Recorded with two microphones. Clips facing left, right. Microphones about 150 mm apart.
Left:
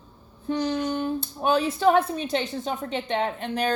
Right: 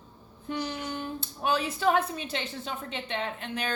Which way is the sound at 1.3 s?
35° left (ahead or behind).